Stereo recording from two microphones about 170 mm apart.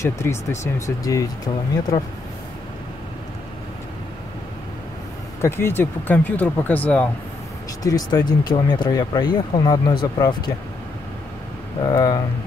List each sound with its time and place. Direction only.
0.0 s speech: 15° left (ahead or behind)
5.4 s speech: 15° left (ahead or behind)
7.8 s speech: 20° left (ahead or behind)
11.8 s speech: 25° left (ahead or behind)